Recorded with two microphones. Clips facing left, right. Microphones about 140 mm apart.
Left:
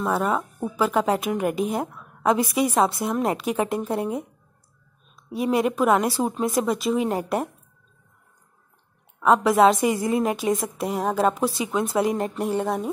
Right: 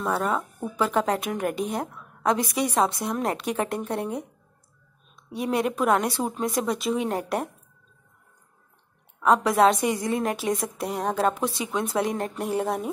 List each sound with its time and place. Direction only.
0.0 s a woman's voice: centre (ahead or behind)
0.3 s speech: 15° left (ahead or behind)
0.7 s a woman's voice: 5° left (ahead or behind)
5.3 s a woman's voice: centre (ahead or behind)
9.2 s a woman's voice: centre (ahead or behind)